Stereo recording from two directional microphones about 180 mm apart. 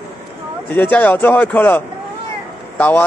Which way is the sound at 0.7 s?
10° left (ahead or behind).